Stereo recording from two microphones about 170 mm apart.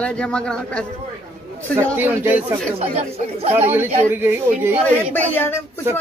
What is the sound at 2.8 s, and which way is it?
Speech, 40° right (ahead or behind).